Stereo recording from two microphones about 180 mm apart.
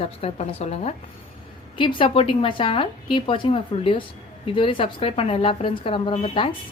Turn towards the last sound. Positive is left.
turn(degrees=30)  # may be behind; listen again after turning